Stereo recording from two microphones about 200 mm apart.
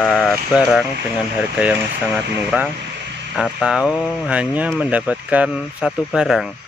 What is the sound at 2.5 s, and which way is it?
Speech, 5° right (ahead or behind).